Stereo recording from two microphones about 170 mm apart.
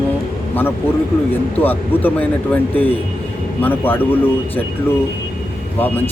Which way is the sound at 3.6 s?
10° left (ahead or behind).